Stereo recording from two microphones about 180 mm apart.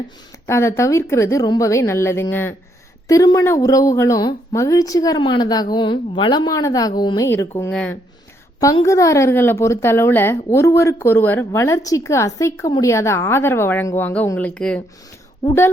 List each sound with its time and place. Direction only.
0.4 s a woman's voice: 15° left (ahead or behind)
7.3 s a woman's voice: 15° left (ahead or behind)
8.6 s a woman's voice: 15° left (ahead or behind)